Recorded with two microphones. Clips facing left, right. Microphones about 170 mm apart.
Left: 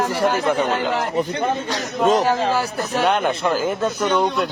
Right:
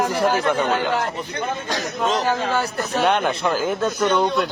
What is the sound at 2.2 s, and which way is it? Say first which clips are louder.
Speech: left 2 dB; 5° left (ahead or behind).